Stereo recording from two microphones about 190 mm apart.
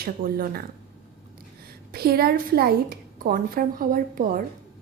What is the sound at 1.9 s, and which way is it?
A woman's voice, 55° right (ahead or behind).